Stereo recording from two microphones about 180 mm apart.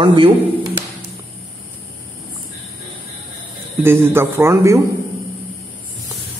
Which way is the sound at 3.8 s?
15° right (ahead or behind).